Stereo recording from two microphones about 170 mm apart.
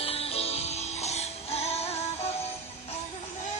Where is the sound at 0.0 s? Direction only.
35° left (ahead or behind).